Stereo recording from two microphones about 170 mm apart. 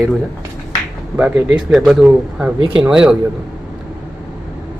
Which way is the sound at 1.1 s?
5° right (ahead or behind).